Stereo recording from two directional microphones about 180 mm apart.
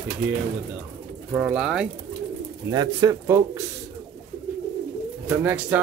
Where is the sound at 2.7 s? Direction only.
20° right (ahead or behind).